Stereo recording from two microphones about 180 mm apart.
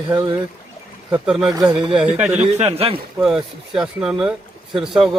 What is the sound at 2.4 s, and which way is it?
Speech, 35° right (ahead or behind).